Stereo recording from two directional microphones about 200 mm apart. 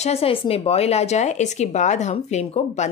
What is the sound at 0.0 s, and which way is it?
A woman's voice, 30° left (ahead or behind).